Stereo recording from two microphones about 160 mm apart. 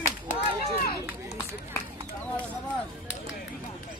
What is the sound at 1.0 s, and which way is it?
Run, 20° right (ahead or behind).